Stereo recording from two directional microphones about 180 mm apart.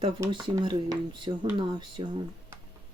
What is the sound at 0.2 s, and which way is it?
Speech, 25° right (ahead or behind).